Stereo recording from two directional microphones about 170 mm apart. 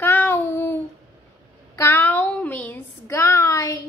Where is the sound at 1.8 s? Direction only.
15° left (ahead or behind).